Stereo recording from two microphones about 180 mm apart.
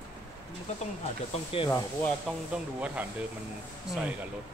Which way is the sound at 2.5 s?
5° right (ahead or behind).